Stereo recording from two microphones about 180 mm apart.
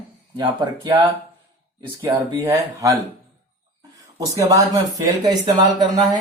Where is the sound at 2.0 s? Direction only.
15° right (ahead or behind).